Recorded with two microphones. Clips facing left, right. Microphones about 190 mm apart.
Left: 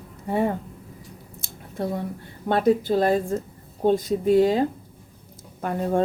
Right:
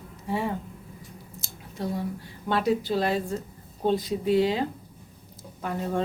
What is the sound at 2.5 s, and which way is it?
A woman's voice, 50° left (ahead or behind).